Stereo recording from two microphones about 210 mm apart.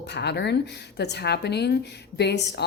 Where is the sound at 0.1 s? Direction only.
55° left (ahead or behind).